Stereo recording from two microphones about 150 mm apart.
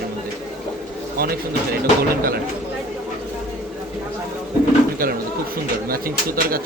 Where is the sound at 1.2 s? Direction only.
90° right.